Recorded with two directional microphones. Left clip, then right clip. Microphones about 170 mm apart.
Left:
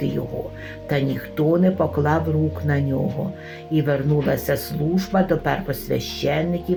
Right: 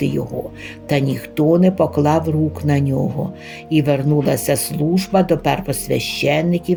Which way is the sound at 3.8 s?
80° right.